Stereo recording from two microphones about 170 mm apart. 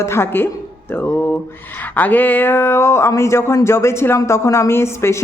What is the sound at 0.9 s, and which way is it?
Mantra, 10° left (ahead or behind).